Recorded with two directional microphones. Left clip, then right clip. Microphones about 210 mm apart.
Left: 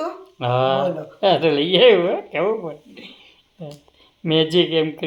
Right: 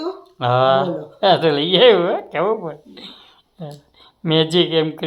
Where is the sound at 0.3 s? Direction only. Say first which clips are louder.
Right 4 dB; 5° right (ahead or behind).